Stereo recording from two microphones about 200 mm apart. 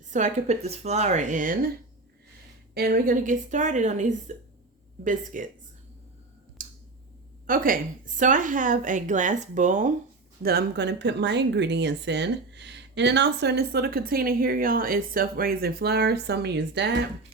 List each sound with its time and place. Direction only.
0.1 s a woman's voice: 35° right (ahead or behind)
2.7 s a woman's voice: 50° right (ahead or behind)
6.6 s scissors: 40° right (ahead or behind)
7.4 s a woman's voice: 45° right (ahead or behind)
10.4 s speech: 50° right (ahead or behind)